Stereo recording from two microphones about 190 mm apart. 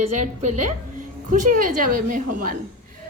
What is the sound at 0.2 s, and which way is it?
A woman's voice, 40° right (ahead or behind).